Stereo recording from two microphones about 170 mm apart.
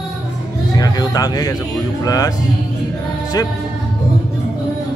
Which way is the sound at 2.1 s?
20° left (ahead or behind).